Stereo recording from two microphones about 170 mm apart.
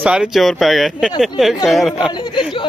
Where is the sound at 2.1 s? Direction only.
25° left (ahead or behind).